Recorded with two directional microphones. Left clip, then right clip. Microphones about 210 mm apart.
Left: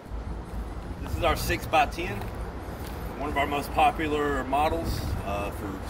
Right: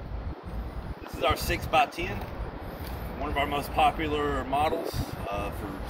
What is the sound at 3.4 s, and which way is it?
Speech, 15° left (ahead or behind).